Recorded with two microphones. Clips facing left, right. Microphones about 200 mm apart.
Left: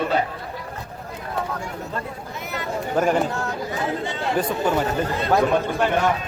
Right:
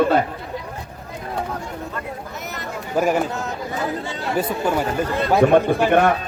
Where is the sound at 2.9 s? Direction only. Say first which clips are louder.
Right 1 dB; 10° right (ahead or behind).